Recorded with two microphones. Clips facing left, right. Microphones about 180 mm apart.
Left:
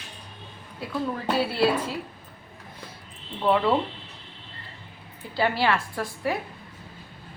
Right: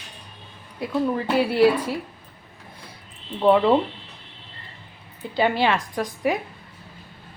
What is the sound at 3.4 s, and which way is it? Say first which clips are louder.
Speech: right 5 dB; 25° right (ahead or behind).